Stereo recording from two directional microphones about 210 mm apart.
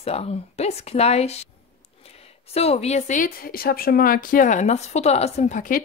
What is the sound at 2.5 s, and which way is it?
A woman's voice, 30° left (ahead or behind).